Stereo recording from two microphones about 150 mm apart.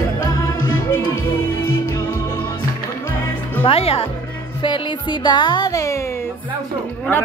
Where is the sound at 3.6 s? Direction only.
40° left (ahead or behind).